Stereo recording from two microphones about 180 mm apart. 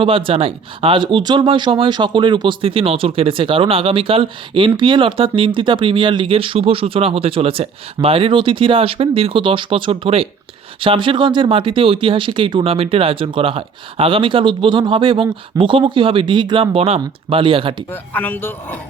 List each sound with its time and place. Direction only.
0.0 s speech: 30° right (ahead or behind)
17.9 s speech: 10° left (ahead or behind)